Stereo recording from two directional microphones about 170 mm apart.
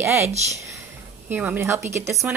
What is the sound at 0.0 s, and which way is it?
Speech, 15° right (ahead or behind).